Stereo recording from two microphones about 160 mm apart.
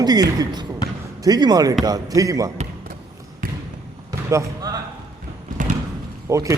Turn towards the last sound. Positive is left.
turn(degrees=-20)  # may be behind; listen again after turning